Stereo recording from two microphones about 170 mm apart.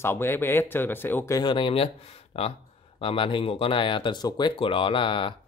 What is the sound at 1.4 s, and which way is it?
Speech, 30° left (ahead or behind).